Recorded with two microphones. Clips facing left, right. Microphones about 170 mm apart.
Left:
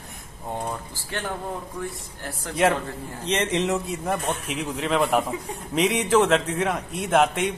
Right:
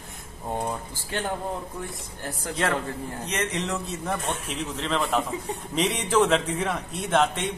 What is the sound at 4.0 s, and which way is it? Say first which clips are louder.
A man's voice: left 3 dB; 5° left (ahead or behind).